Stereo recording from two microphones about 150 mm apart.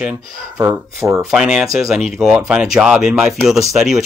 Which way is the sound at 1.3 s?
5° right (ahead or behind).